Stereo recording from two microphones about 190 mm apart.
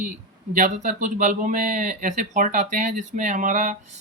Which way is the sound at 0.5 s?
40° right (ahead or behind).